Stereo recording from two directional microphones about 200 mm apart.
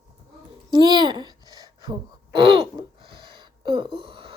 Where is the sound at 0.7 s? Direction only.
20° right (ahead or behind).